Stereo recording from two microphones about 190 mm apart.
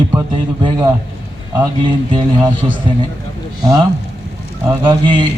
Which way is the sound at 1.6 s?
25° right (ahead or behind).